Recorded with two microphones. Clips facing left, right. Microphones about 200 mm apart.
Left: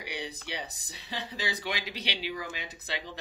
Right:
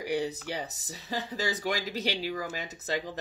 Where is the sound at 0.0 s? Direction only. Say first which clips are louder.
Right 8 dB; 45° right (ahead or behind).